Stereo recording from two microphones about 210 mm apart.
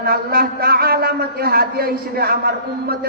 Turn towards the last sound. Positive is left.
turn(degrees=-45)  # may be behind; listen again after turning